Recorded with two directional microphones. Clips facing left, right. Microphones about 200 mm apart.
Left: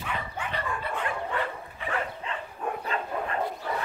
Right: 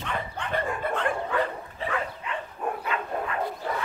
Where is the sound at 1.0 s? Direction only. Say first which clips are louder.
Right 4 dB; 35° right (ahead or behind).